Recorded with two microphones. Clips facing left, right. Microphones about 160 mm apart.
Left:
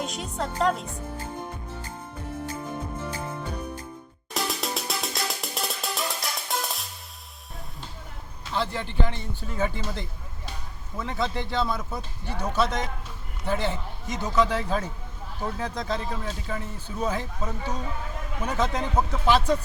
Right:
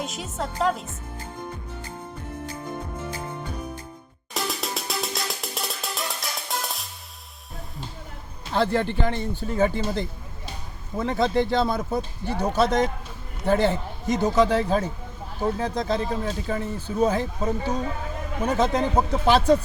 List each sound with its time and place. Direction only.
0.0 s a woman's voice: centre (ahead or behind)
4.4 s music: centre (ahead or behind)
8.5 s speech: 50° right (ahead or behind); by 19.5 s 35° right (ahead or behind)